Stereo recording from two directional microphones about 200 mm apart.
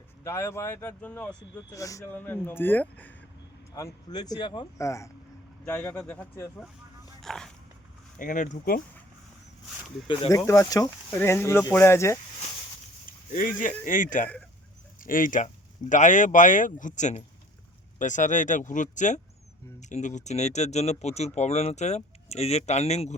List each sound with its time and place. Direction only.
0.3 s speech: 10° left (ahead or behind)
8.2 s speech: 40° left (ahead or behind)
10.1 s speech: 15° left (ahead or behind)
13.3 s speech: 40° left (ahead or behind)